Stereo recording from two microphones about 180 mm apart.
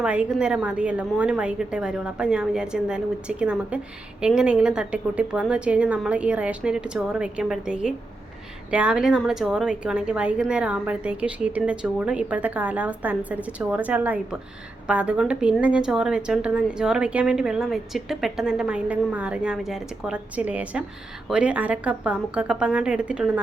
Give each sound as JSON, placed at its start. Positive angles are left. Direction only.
{"t": 0.0, "sound": "a woman's voice", "side_deg": -5}